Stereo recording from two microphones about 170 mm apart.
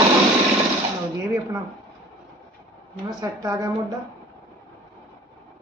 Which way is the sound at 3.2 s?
20° right (ahead or behind).